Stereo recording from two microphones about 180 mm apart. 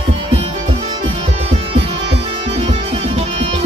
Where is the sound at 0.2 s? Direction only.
30° right (ahead or behind).